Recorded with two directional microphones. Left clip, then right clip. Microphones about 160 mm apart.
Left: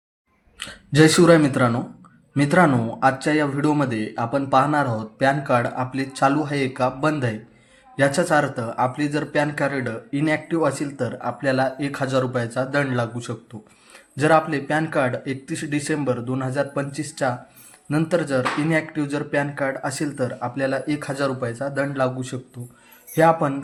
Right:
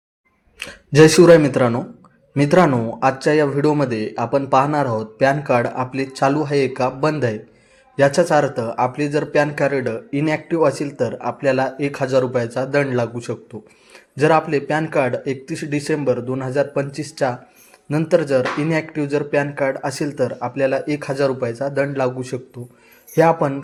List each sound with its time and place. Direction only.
0.6 s a man's voice: 20° right (ahead or behind)